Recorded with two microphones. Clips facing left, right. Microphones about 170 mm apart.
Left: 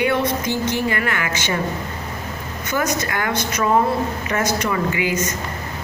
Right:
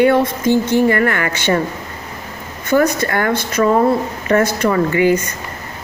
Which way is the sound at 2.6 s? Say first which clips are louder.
Right 8 dB; 55° right (ahead or behind).